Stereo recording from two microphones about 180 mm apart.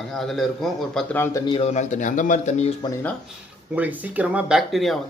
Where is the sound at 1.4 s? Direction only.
35° left (ahead or behind).